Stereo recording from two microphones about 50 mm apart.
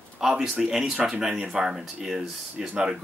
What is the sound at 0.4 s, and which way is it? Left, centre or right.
Speech, centre.